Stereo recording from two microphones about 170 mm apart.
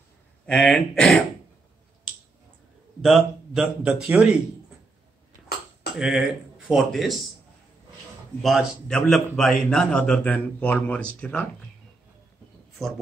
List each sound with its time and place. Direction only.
0.5 s a man's voice: 5° left (ahead or behind)
3.0 s a man's voice: centre (ahead or behind)
5.9 s speech: 5° right (ahead or behind)
8.4 s a man's voice: centre (ahead or behind)